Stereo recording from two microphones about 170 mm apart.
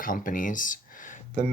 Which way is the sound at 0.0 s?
55° left (ahead or behind).